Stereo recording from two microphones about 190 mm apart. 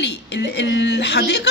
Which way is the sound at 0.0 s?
65° left (ahead or behind).